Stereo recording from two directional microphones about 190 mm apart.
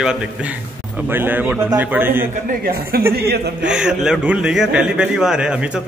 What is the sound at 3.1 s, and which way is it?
Speech, 55° right (ahead or behind).